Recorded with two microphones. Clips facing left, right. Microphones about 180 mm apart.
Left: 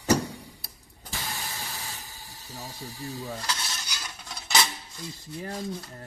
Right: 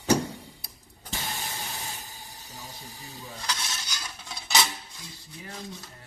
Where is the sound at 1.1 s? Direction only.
20° right (ahead or behind).